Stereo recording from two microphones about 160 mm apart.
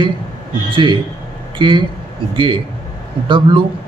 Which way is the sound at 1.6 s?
30° right (ahead or behind).